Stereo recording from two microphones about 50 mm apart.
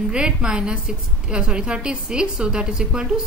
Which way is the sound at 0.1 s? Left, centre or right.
Centre.